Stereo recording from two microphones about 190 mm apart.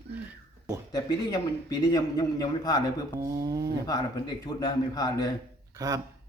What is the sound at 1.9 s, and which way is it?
Speech, 20° left (ahead or behind).